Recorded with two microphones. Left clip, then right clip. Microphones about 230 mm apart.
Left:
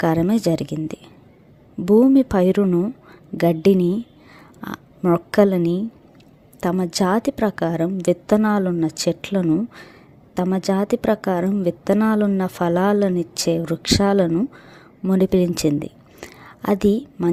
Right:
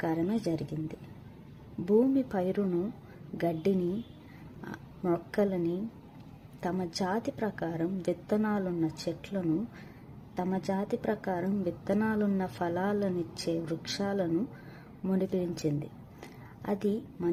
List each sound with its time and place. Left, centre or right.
0.0 s a woman's voice: left